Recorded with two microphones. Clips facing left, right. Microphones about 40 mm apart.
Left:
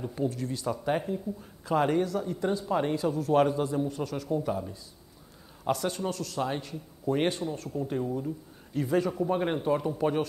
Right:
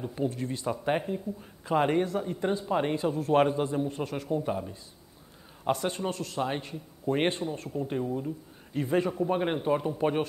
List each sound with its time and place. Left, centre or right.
0.2 s speech: right
9.3 s speech: centre